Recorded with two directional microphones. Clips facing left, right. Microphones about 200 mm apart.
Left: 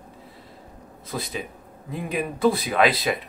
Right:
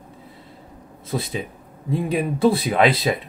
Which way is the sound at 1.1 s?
25° right (ahead or behind).